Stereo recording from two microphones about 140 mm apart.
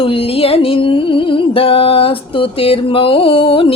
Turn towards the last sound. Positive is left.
turn(degrees=40)  # may be behind; listen again after turning